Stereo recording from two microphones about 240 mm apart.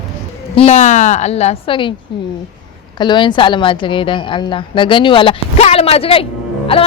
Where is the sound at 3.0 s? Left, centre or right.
Centre.